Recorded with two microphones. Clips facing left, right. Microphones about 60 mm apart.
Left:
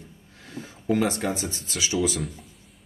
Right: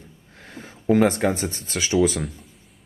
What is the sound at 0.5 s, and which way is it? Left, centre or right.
Speech, right.